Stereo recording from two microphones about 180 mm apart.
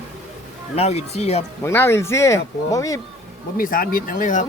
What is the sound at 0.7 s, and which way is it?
Speech, 35° left (ahead or behind).